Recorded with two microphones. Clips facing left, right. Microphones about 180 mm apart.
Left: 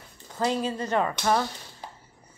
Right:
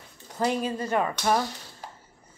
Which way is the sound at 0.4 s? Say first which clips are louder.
Even; 15° right (ahead or behind).